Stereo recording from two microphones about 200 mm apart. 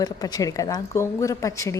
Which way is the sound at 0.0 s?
20° left (ahead or behind).